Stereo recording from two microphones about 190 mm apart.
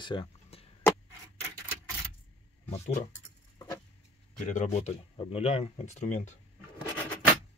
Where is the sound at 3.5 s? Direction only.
15° left (ahead or behind).